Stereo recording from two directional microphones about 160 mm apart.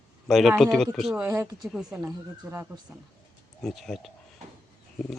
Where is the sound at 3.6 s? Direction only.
Centre (ahead or behind).